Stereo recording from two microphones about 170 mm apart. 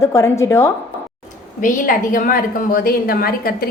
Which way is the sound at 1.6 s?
50° left (ahead or behind).